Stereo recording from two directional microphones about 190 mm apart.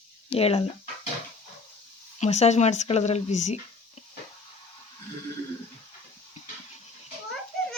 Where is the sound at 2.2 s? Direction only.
35° left (ahead or behind).